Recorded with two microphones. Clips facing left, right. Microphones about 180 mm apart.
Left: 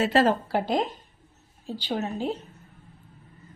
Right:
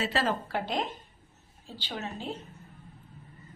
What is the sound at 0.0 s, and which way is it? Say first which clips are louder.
Speech: left 8 dB; 50° left (ahead or behind).